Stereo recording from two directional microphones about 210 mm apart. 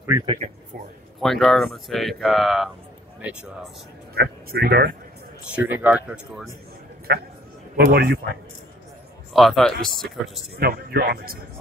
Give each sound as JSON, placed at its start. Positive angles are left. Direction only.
{"t": 0.4, "sound": "a man's voice", "side_deg": -30}
{"t": 1.2, "sound": "speech", "side_deg": 0}
{"t": 4.1, "sound": "speech", "side_deg": -45}
{"t": 5.5, "sound": "speech", "side_deg": -5}
{"t": 7.1, "sound": "speech", "side_deg": -50}
{"t": 9.3, "sound": "speech", "side_deg": 0}
{"t": 10.5, "sound": "speech", "side_deg": -50}